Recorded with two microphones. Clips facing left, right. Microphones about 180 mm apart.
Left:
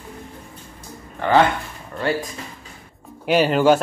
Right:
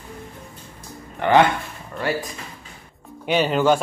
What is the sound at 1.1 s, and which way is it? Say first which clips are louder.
Speech: right 1 dB; 15° right (ahead or behind).